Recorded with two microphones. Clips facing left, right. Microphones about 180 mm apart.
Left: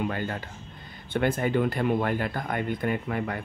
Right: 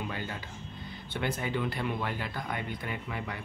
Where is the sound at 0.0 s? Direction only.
55° left (ahead or behind).